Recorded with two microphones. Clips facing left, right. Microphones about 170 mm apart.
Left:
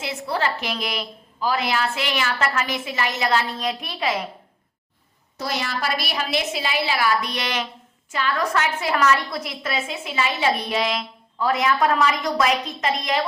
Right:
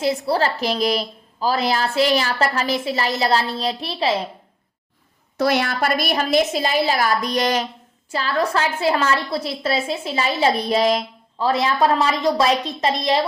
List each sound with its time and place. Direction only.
0.0 s a woman's voice: 35° right (ahead or behind)
5.4 s a woman's voice: 65° right (ahead or behind); by 13.2 s 35° right (ahead or behind)